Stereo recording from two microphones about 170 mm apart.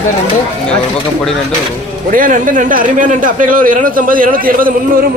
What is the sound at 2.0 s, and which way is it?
A man's voice, 55° right (ahead or behind).